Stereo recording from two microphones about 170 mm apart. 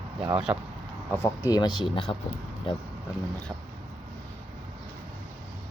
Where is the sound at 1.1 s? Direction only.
20° left (ahead or behind).